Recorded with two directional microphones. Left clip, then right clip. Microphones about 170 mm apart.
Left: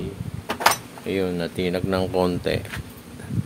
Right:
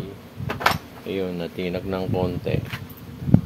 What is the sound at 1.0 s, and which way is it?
Speech, 40° left (ahead or behind).